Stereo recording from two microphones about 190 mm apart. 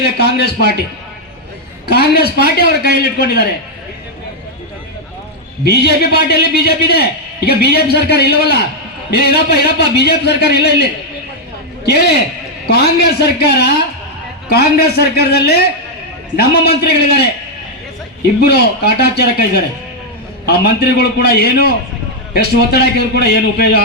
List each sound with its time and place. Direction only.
0.0 s a man's voice: 60° left (ahead or behind)
1.9 s a man's voice: 55° left (ahead or behind)
5.6 s a man's voice: 60° left (ahead or behind)
12.6 s a man's voice: 55° left (ahead or behind)
18.3 s a man's voice: 60° left (ahead or behind)